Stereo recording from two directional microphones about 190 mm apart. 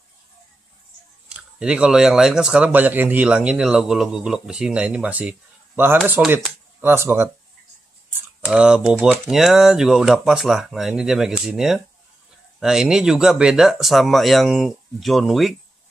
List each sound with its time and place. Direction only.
1.3 s speech: 5° right (ahead or behind)